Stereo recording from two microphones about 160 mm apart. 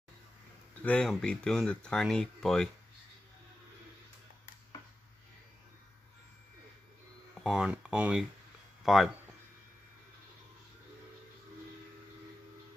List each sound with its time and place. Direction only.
0.8 s speech: 5° left (ahead or behind)
7.3 s speech: 5° right (ahead or behind)